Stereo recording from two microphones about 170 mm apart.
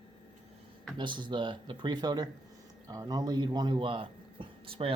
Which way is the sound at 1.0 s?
25° right (ahead or behind).